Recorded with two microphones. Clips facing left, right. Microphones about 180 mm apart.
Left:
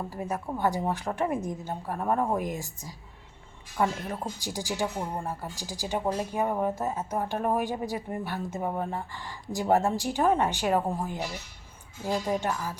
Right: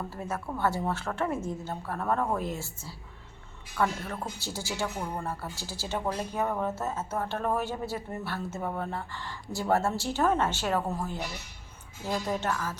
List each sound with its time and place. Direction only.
0.1 s speech: 15° left (ahead or behind)